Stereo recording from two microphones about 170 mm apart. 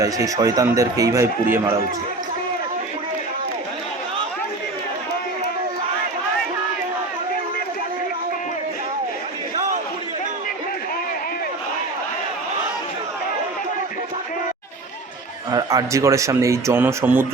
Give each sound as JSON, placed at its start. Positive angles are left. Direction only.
{"t": 0.0, "sound": "speech", "side_deg": -20}
{"t": 15.4, "sound": "speech", "side_deg": -20}